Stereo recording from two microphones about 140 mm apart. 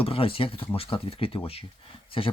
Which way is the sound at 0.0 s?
40° left (ahead or behind).